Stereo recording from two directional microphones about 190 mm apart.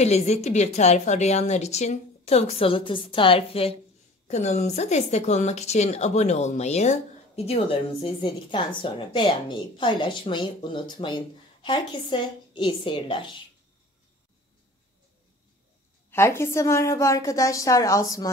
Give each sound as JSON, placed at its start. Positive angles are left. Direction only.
{"t": 0.0, "sound": "a woman's voice", "side_deg": 35}
{"t": 16.1, "sound": "a woman's voice", "side_deg": 15}